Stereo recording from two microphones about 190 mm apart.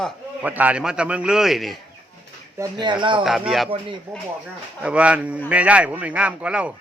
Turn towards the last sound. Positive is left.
turn(degrees=-5)  # may be behind; listen again after turning